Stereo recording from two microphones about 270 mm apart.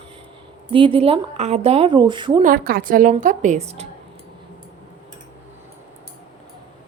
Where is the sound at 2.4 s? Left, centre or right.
Right.